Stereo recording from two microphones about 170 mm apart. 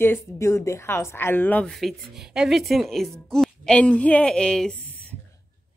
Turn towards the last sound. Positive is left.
turn(degrees=5)  # may be behind; listen again after turning